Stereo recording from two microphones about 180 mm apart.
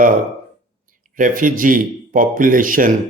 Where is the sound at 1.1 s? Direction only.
50° right (ahead or behind).